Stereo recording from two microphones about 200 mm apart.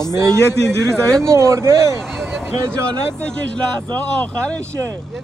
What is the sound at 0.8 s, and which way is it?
Speech, 5° left (ahead or behind).